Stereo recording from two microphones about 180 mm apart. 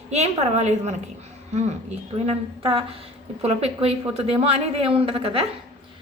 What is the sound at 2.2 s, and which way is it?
A woman's voice, 35° right (ahead or behind).